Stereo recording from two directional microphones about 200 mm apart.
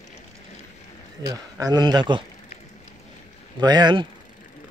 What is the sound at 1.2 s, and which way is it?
Speech, 20° right (ahead or behind).